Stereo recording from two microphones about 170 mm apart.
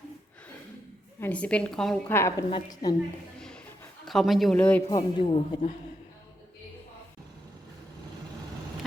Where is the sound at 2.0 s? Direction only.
15° left (ahead or behind).